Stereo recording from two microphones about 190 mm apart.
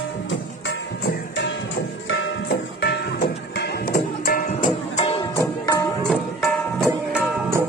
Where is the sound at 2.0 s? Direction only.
65° left (ahead or behind); by 5.4 s 30° left (ahead or behind).